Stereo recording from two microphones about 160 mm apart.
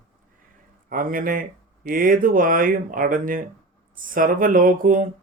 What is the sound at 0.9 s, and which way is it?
Speech, 60° right (ahead or behind).